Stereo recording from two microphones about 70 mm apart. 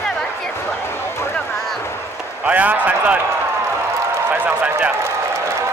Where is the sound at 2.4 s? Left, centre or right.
Right.